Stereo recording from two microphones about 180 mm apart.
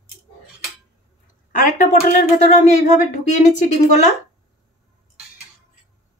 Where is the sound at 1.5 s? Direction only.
45° left (ahead or behind).